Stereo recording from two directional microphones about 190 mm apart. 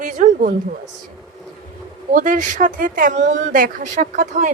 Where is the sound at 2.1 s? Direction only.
40° right (ahead or behind).